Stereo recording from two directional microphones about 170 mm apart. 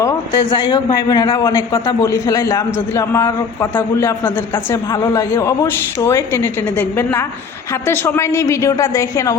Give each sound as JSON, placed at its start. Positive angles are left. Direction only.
{"t": 0.0, "sound": "a man's voice", "side_deg": 25}